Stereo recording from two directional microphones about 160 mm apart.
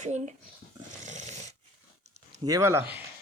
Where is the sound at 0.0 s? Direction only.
45° right (ahead or behind).